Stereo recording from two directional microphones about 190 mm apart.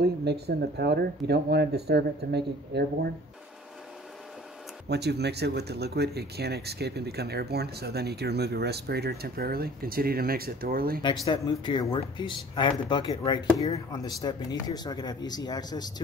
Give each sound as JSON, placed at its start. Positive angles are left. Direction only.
{"t": 0.0, "sound": "speech", "side_deg": -60}
{"t": 4.8, "sound": "speech", "side_deg": -60}
{"t": 11.2, "sound": "speech", "side_deg": 25}